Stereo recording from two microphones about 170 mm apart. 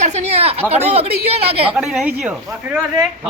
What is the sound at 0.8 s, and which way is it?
Speech, 40° right (ahead or behind).